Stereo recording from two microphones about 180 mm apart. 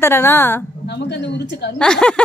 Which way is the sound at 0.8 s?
70° left (ahead or behind).